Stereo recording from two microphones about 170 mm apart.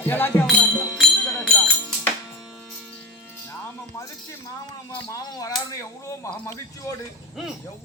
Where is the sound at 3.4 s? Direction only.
15° left (ahead or behind).